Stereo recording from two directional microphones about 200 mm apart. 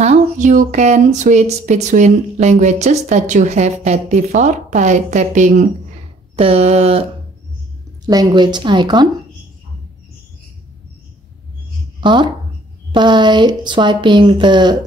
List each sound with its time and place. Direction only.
0.0 s speech: 35° right (ahead or behind)
8.1 s speech: 20° right (ahead or behind)
12.0 s speech: 25° right (ahead or behind)